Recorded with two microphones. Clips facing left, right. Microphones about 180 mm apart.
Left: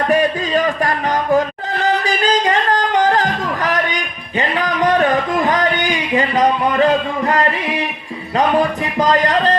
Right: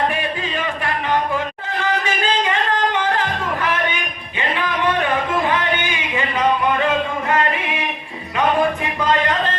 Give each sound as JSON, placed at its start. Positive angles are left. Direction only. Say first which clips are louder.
{"t": 0.1, "sound": "music", "louder": "left 9 dB", "side_deg": 40}